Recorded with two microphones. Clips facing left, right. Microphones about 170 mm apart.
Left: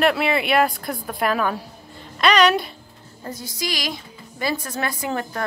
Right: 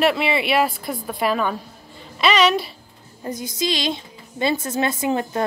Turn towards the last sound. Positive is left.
turn(degrees=-20)  # may be behind; listen again after turning